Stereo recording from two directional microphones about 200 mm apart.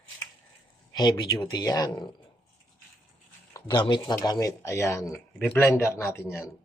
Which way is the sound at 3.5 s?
20° left (ahead or behind).